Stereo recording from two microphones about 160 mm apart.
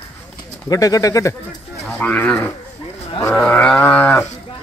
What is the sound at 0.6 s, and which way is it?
Speech, 20° left (ahead or behind).